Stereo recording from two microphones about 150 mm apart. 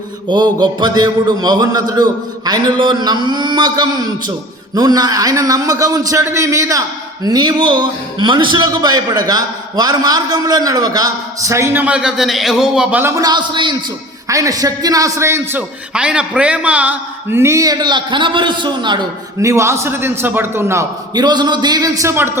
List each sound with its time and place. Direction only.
0.3 s a man's voice: 30° right (ahead or behind)
19.4 s a man's voice: 20° right (ahead or behind)